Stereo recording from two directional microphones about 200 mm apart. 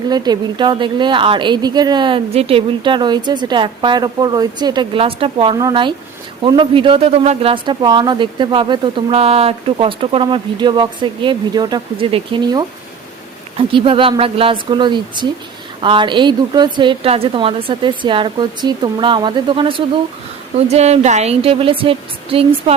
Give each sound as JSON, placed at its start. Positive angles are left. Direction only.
{"t": 0.1, "sound": "speech", "side_deg": -20}